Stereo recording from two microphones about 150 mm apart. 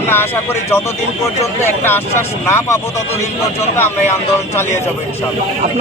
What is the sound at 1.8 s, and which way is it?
Speech, 15° left (ahead or behind).